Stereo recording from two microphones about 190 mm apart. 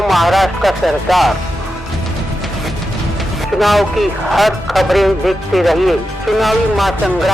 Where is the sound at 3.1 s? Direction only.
Centre (ahead or behind).